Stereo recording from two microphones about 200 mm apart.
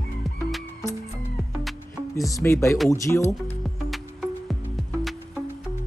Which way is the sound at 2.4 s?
15° left (ahead or behind).